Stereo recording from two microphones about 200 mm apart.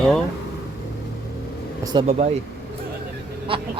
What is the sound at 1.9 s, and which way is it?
Speech, 35° right (ahead or behind).